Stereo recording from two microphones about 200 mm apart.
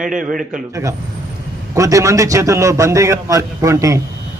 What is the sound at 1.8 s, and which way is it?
Speech, 15° right (ahead or behind).